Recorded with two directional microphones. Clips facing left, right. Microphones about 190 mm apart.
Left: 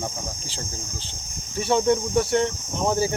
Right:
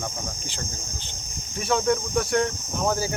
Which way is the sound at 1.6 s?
25° left (ahead or behind).